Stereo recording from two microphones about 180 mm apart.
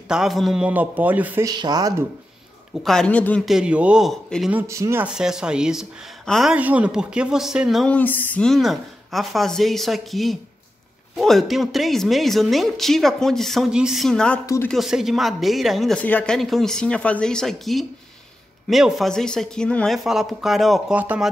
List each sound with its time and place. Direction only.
0.1 s a man's voice: centre (ahead or behind)
1.5 s speech: 20° right (ahead or behind)
2.8 s a man's voice: 5° left (ahead or behind)
14.4 s speech: 20° left (ahead or behind)
14.7 s a man's voice: centre (ahead or behind)